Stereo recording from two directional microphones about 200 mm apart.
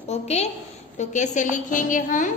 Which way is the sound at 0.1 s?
30° left (ahead or behind).